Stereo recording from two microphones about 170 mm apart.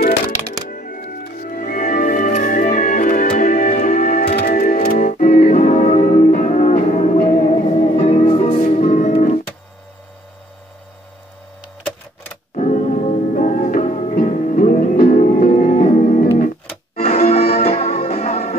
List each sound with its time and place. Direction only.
0.7 s music: 55° left (ahead or behind)
12.5 s music: 45° left (ahead or behind)
17.6 s music: 35° left (ahead or behind)